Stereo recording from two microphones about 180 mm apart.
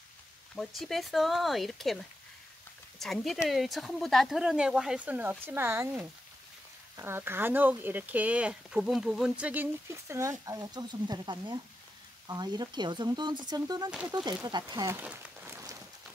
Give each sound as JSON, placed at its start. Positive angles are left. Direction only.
{"t": 0.6, "sound": "speech", "side_deg": 0}
{"t": 13.8, "sound": "speech", "side_deg": -5}
{"t": 14.4, "sound": "speech", "side_deg": -20}
{"t": 15.0, "sound": "a sound", "side_deg": -10}